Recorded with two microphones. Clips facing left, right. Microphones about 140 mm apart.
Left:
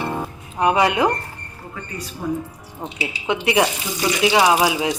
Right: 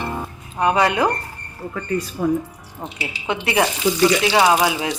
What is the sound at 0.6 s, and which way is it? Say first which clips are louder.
Speech: even; 15° left (ahead or behind).